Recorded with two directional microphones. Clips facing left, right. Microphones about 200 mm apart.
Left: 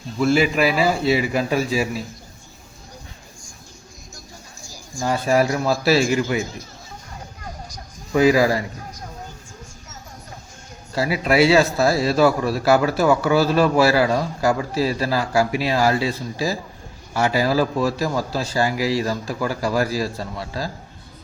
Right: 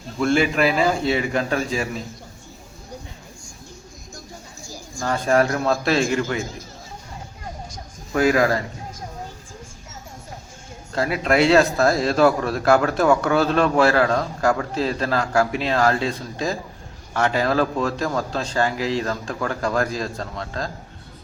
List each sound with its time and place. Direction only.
0.2 s a man's voice: 5° left (ahead or behind)
5.0 s speech: 10° left (ahead or behind)
8.1 s speech: 5° left (ahead or behind)
10.9 s a man's voice: 5° left (ahead or behind)